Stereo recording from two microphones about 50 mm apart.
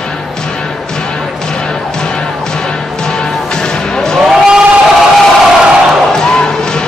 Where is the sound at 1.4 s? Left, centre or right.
Centre.